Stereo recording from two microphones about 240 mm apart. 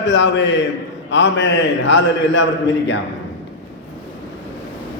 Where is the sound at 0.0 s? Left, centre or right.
Left.